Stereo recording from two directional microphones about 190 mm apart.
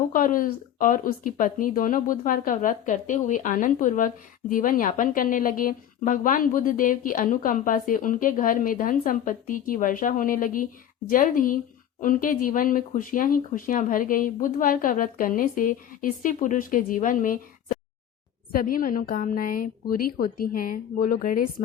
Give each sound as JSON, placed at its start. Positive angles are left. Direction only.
{"t": 0.1, "sound": "speech", "side_deg": 45}